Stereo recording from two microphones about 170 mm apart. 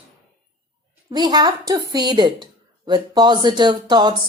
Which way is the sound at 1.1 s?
25° right (ahead or behind).